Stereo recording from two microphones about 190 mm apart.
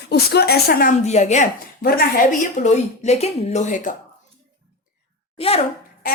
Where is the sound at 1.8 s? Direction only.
50° left (ahead or behind).